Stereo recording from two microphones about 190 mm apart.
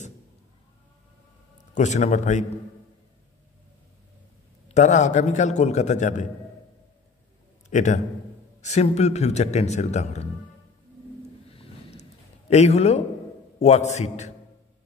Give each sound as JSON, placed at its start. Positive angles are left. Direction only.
{"t": 1.8, "sound": "a man's voice", "side_deg": 40}
{"t": 4.6, "sound": "a man's voice", "side_deg": 40}
{"t": 7.7, "sound": "a man's voice", "side_deg": 40}
{"t": 11.4, "sound": "a sound", "side_deg": 30}
{"t": 13.6, "sound": "a man's voice", "side_deg": 35}